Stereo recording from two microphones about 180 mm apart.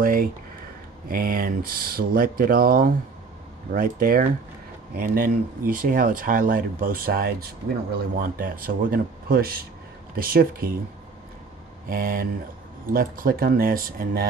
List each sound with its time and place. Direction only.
0.0 s a sound: 50° right (ahead or behind)
1.0 s speech: 55° right (ahead or behind)
11.9 s speech: 50° right (ahead or behind)